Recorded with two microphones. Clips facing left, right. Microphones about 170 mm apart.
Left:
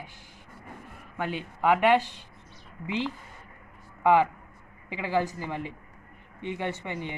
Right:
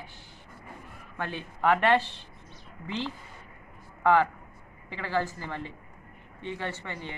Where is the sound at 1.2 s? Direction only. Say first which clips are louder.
Left 2 dB; 15° left (ahead or behind).